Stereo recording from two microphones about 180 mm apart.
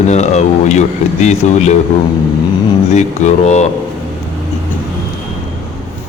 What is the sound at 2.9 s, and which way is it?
Speech, 40° left (ahead or behind).